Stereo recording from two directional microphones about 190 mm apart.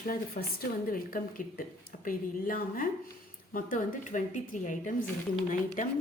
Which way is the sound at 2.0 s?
45° left (ahead or behind).